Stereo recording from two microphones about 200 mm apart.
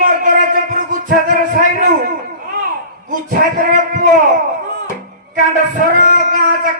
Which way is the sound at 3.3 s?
40° right (ahead or behind).